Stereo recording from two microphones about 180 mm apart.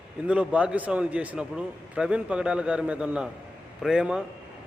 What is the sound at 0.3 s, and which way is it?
A man's voice, 5° right (ahead or behind).